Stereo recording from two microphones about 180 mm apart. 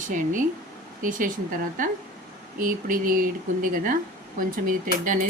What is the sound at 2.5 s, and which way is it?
Speech, 50° right (ahead or behind).